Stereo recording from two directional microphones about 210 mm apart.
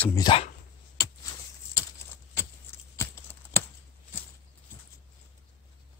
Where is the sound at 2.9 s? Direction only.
15° left (ahead or behind).